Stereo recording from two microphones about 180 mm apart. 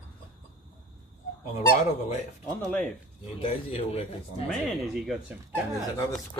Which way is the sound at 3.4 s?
35° left (ahead or behind).